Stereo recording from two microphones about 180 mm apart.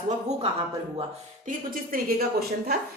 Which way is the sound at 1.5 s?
50° right (ahead or behind).